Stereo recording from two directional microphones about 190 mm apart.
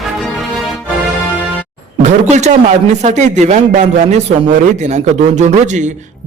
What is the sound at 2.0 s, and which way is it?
A man's voice, 40° right (ahead or behind).